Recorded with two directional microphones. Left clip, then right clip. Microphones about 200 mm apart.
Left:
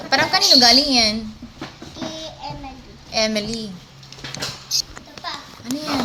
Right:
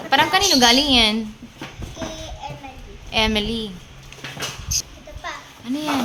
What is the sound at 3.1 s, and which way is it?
Speech, 15° right (ahead or behind).